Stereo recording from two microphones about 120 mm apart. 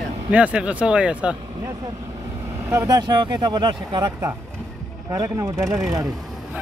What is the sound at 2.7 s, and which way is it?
Speech, 30° right (ahead or behind).